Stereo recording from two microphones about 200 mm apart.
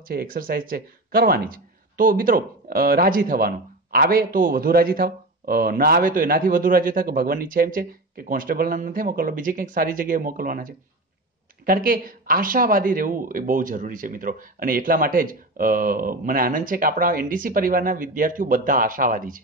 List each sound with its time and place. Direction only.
0.0 s speech: 45° right (ahead or behind)